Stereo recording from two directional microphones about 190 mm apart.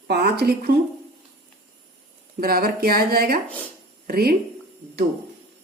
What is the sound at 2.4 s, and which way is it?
Speech, 50° right (ahead or behind).